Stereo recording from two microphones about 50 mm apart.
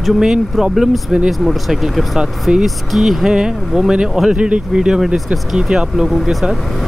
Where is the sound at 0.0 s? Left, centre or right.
Centre.